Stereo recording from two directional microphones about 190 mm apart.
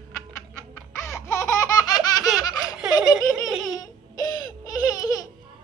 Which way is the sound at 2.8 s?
5° right (ahead or behind).